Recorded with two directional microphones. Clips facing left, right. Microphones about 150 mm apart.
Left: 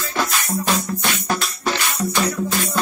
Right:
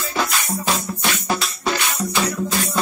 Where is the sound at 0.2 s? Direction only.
Centre (ahead or behind).